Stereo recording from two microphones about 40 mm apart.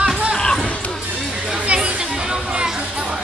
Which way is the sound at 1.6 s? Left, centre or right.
Right.